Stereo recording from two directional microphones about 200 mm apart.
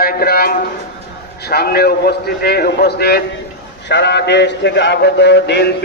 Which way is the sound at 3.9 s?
60° left (ahead or behind).